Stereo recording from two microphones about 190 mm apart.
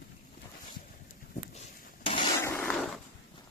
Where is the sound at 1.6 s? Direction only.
30° left (ahead or behind).